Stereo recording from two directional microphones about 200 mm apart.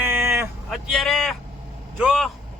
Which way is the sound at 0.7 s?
Centre (ahead or behind).